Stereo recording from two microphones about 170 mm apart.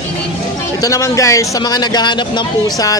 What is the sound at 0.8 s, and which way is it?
A man's voice, 20° left (ahead or behind).